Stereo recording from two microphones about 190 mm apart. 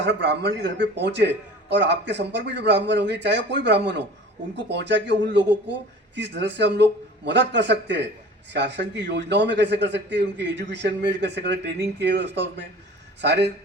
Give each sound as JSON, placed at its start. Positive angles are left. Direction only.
{"t": 0.0, "sound": "a man's voice", "side_deg": -65}